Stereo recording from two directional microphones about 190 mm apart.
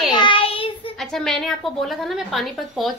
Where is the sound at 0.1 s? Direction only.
25° left (ahead or behind).